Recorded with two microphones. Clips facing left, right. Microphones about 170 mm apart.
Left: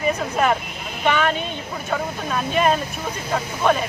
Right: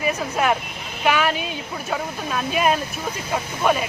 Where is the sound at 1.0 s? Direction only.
5° right (ahead or behind).